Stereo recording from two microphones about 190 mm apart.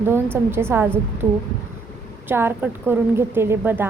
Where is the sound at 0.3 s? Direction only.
10° right (ahead or behind).